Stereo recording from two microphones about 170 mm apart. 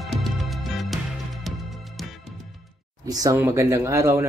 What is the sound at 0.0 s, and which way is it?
Music, centre (ahead or behind).